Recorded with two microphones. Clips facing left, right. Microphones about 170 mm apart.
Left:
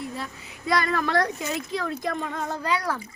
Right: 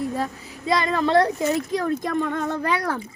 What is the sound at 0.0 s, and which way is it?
Female singing, 40° right (ahead or behind).